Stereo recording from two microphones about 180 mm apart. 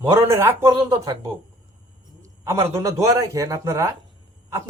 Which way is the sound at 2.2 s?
15° right (ahead or behind).